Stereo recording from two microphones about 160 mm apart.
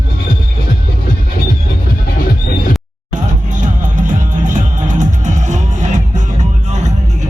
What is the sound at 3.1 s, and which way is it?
Music, 50° right (ahead or behind).